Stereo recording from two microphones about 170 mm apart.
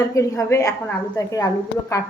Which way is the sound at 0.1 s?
15° left (ahead or behind).